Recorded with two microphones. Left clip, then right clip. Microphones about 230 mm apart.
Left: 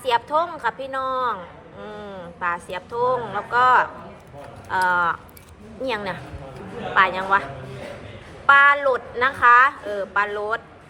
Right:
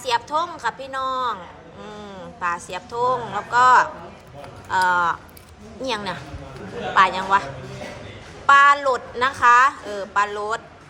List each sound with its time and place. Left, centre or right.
0.0 s a woman's voice: centre
8.4 s a woman's voice: centre